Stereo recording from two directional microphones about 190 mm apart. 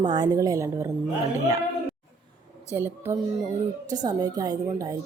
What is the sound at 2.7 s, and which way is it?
A woman's voice, 10° right (ahead or behind).